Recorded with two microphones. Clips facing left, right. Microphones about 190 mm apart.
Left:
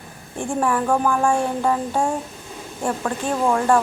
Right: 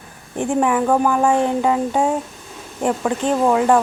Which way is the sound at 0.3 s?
20° right (ahead or behind).